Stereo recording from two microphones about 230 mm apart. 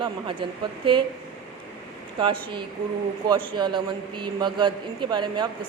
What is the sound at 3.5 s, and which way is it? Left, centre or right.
Speech, centre.